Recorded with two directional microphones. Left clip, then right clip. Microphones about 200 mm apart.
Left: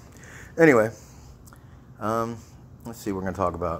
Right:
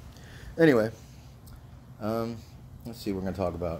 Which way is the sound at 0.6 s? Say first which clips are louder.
Left 5 dB; 5° right (ahead or behind).